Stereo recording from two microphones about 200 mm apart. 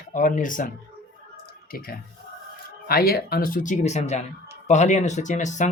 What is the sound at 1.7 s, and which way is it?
Speech, 45° left (ahead or behind).